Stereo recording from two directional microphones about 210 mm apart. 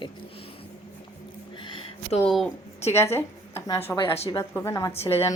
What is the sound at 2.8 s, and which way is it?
Speech, 30° left (ahead or behind).